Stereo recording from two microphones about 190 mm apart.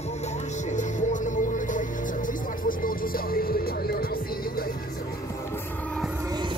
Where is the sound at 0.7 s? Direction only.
40° left (ahead or behind).